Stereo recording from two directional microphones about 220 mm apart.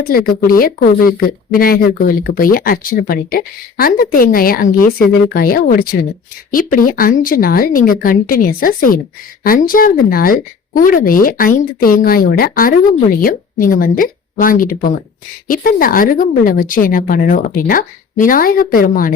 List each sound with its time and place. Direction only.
0.0 s speech: 40° left (ahead or behind)